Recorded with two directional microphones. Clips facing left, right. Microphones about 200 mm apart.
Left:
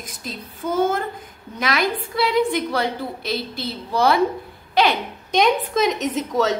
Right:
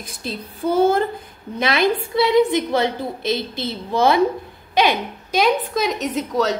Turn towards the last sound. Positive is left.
turn(degrees=0)  # may be behind; listen again after turning